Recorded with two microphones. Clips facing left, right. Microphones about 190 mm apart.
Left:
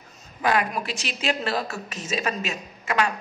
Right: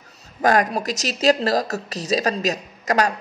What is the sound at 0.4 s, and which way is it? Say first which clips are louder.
A woman's voice: right 5 dB; 40° right (ahead or behind).